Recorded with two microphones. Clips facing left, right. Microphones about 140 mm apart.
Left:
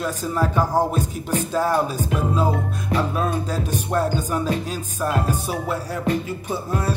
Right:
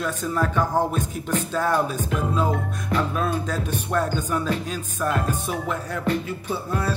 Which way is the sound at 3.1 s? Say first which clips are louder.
Left 1 dB; 30° left (ahead or behind).